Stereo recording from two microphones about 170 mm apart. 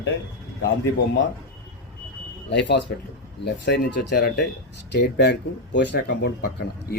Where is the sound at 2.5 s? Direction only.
90° left.